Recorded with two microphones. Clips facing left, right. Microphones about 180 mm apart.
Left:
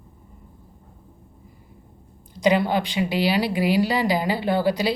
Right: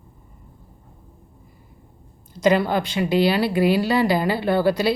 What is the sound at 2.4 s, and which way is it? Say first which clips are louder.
A woman's voice: right 1 dB; 15° left (ahead or behind).